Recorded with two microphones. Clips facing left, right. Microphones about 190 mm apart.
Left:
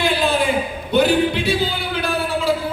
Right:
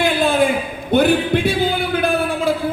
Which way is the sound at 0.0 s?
55° right (ahead or behind).